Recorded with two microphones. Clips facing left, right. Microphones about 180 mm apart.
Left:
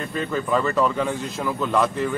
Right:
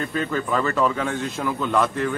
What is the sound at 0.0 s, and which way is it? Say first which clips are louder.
Speech: right 1 dB; centre (ahead or behind).